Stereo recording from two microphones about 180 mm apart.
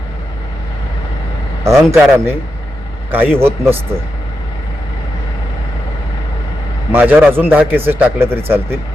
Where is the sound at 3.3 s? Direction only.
15° right (ahead or behind).